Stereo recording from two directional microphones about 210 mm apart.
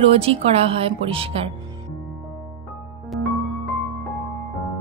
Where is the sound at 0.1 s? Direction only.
30° right (ahead or behind).